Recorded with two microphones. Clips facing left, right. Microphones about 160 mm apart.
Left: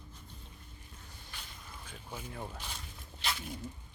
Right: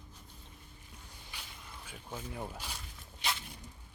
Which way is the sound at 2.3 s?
10° right (ahead or behind).